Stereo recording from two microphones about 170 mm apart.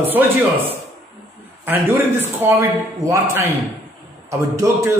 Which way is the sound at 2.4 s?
15° right (ahead or behind).